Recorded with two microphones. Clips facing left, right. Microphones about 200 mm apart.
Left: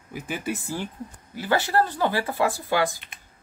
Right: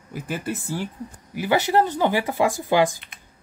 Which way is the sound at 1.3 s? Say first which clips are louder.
Right 3 dB; 15° right (ahead or behind).